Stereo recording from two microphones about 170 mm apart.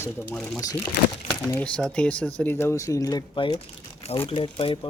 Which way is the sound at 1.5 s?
5° left (ahead or behind).